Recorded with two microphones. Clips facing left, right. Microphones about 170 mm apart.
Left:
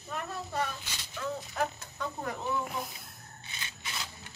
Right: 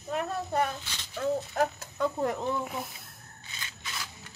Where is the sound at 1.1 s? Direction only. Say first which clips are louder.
Right 7 dB; 45° right (ahead or behind).